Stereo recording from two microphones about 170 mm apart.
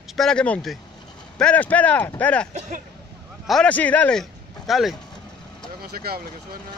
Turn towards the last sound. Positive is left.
turn(degrees=-65)  # may be behind; listen again after turning